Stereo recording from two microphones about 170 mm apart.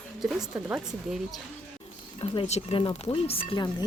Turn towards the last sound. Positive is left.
turn(degrees=30)  # may be behind; listen again after turning